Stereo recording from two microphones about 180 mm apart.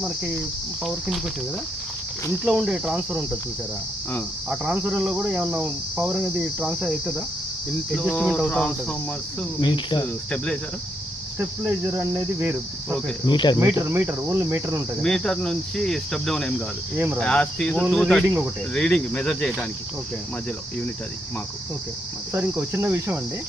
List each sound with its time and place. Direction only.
2.4 s cricket: 5° right (ahead or behind)
4.4 s cricket: 5° right (ahead or behind)
7.9 s cricket: 5° left (ahead or behind)
8.4 s speech: 5° left (ahead or behind)
9.6 s cricket: 25° left (ahead or behind)
10.3 s cricket: 5° left (ahead or behind)
11.3 s cricket: 10° right (ahead or behind)
13.2 s cricket: 25° left (ahead or behind)
13.6 s cricket: 15° right (ahead or behind)
15.0 s cricket: 5° left (ahead or behind)
22.3 s cricket: 10° right (ahead or behind)